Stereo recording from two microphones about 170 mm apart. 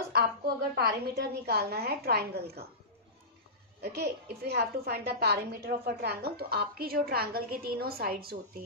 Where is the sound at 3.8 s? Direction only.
75° right (ahead or behind).